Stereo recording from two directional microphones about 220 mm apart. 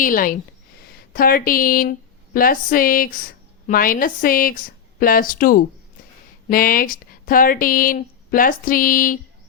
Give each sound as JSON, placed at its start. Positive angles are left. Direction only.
{"t": 0.0, "sound": "speech", "side_deg": 40}